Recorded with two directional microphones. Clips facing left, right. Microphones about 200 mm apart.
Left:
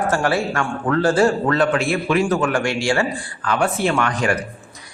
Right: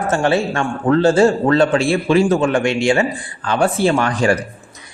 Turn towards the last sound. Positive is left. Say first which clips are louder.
# right 4 dB
turn(degrees=-30)  # may be behind; listen again after turning